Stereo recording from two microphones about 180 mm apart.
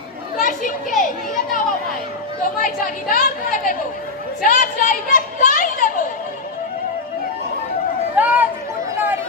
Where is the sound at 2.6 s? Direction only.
50° left (ahead or behind).